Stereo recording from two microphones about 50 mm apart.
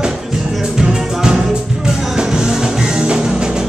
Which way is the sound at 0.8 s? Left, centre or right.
Centre.